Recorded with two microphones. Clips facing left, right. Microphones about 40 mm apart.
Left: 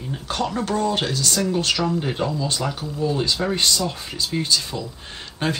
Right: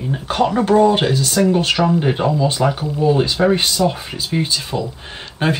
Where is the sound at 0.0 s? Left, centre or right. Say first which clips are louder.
Right 8 dB; right.